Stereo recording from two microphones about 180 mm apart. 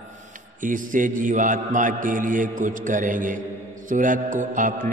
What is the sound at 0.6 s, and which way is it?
Mantra, 45° right (ahead or behind).